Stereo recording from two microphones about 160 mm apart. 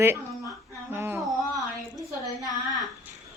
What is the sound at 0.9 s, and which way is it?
Humming, 15° right (ahead or behind).